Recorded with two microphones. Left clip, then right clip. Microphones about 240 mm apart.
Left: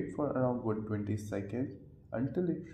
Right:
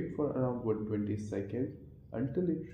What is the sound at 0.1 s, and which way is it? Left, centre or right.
Speech, left.